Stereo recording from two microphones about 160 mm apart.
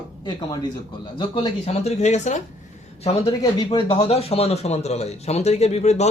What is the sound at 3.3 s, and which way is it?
Speech, 30° left (ahead or behind).